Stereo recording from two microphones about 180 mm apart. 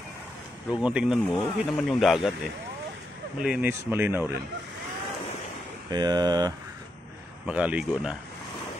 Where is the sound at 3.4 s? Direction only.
10° right (ahead or behind).